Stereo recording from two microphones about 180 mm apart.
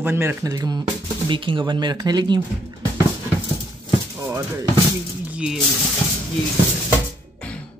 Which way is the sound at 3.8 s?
20° right (ahead or behind).